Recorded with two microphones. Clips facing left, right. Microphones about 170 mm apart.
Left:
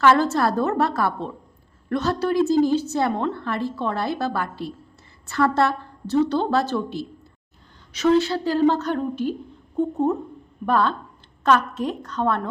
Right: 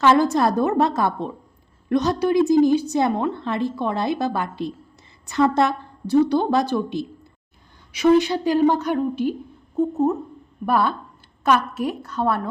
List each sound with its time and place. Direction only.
0.0 s a woman's voice: 15° right (ahead or behind)